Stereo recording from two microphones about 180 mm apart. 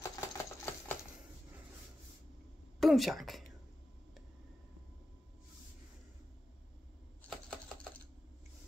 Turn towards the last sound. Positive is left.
turn(degrees=5)  # may be behind; listen again after turning